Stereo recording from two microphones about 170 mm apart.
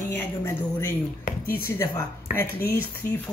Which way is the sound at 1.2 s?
60° left (ahead or behind).